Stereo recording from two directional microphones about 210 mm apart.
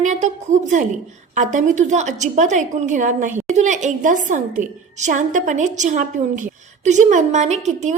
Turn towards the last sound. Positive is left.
turn(degrees=-35)  # may be behind; listen again after turning